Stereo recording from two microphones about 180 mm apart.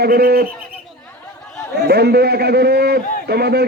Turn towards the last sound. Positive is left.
turn(degrees=-65)  # may be behind; listen again after turning